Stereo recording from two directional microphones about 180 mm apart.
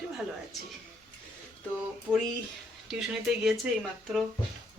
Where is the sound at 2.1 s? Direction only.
5° left (ahead or behind).